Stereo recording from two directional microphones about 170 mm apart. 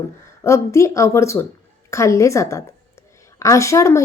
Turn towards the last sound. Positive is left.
turn(degrees=15)  # may be behind; listen again after turning